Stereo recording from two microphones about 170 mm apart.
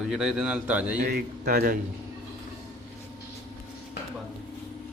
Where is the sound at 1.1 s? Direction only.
60° right (ahead or behind).